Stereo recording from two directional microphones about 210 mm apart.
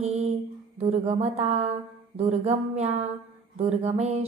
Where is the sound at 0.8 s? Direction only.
25° right (ahead or behind).